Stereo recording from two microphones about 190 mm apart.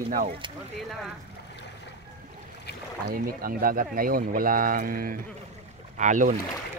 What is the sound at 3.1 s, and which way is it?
Speech, 50° right (ahead or behind).